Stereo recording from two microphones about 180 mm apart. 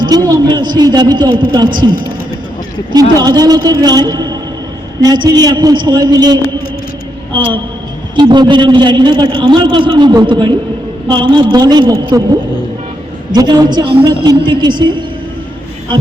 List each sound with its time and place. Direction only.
0.0 s a man's voice: 20° right (ahead or behind)
13.3 s a man's voice: 20° right (ahead or behind)